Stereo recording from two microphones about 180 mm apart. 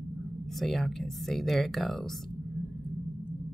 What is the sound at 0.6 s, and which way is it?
Speech, centre (ahead or behind).